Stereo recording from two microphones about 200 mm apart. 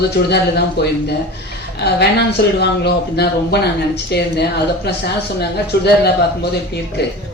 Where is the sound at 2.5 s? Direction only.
55° left (ahead or behind).